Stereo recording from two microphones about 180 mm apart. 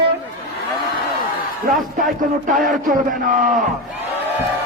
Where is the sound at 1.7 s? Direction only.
Centre (ahead or behind).